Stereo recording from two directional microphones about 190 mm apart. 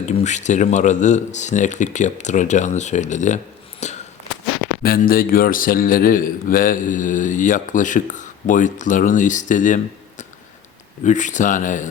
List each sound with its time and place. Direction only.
0.0 s speech: 40° left (ahead or behind)
4.8 s a man's voice: 50° left (ahead or behind)